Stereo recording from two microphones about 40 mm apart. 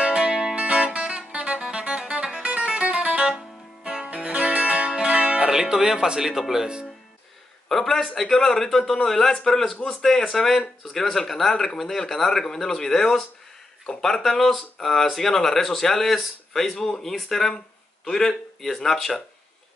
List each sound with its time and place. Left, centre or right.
0.0 s music: right
5.5 s speech: centre
7.6 s speech: centre